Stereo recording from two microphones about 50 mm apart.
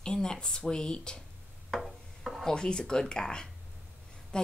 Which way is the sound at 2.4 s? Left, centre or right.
Centre.